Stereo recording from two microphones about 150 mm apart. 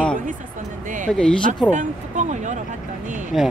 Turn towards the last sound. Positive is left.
turn(degrees=0)  # may be behind; listen again after turning